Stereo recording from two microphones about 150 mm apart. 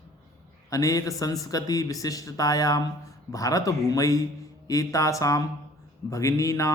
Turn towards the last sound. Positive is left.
turn(degrees=20)  # may be behind; listen again after turning